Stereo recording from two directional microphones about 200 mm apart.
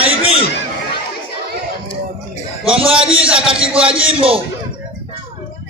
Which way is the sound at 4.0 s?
25° right (ahead or behind).